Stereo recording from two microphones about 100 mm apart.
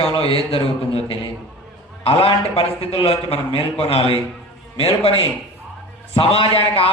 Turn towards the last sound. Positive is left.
turn(degrees=70)  # may be behind; listen again after turning